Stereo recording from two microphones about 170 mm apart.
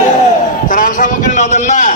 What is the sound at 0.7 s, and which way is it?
A man's voice, 50° left (ahead or behind).